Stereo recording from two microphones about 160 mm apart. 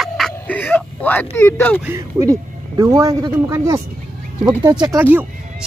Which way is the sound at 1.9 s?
20° right (ahead or behind).